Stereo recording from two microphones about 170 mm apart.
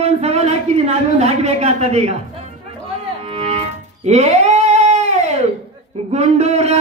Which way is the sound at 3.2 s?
35° right (ahead or behind).